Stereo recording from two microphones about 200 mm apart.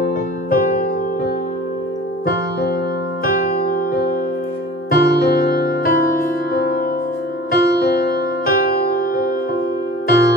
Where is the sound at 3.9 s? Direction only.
45° left (ahead or behind).